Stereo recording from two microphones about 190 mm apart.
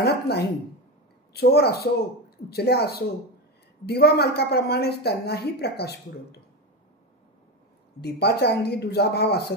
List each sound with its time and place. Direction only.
0.0 s a sound: 60° left (ahead or behind)
1.3 s a woman's voice: 55° left (ahead or behind)
8.0 s a woman's voice: 60° left (ahead or behind)